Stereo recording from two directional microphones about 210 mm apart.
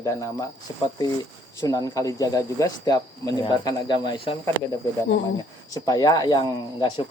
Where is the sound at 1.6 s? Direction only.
15° left (ahead or behind).